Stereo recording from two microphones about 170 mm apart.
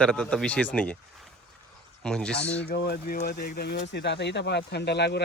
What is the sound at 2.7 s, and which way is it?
Speech, 60° left (ahead or behind).